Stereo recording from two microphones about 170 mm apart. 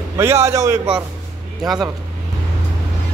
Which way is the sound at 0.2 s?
15° right (ahead or behind).